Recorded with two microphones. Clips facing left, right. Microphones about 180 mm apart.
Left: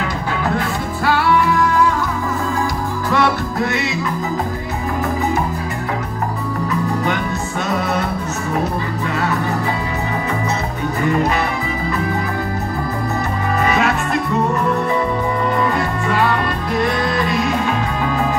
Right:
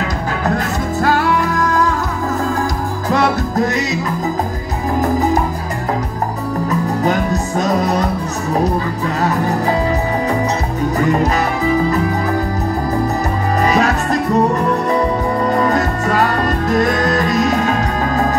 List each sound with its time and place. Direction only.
0.6 s music: 40° right (ahead or behind)
3.1 s music: 40° right (ahead or behind)
7.0 s music: 40° right (ahead or behind)
13.7 s music: 40° right (ahead or behind)
15.5 s music: 40° right (ahead or behind)